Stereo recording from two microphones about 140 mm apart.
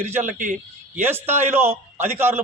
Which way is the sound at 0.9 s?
15° right (ahead or behind).